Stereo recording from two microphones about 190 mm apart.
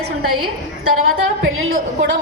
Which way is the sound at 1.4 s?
90° right.